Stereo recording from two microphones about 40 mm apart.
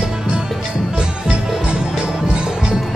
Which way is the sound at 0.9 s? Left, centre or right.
Centre.